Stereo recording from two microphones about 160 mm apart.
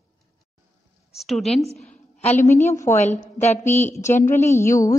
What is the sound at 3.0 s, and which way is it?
Speech, 45° left (ahead or behind).